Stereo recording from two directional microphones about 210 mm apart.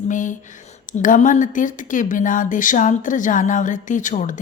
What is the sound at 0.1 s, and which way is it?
Speech, 35° left (ahead or behind).